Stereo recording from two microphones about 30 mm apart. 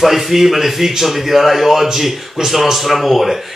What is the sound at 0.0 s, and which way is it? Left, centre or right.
A man's voice, centre.